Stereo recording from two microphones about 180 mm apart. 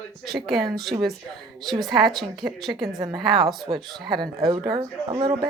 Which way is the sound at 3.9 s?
Centre (ahead or behind).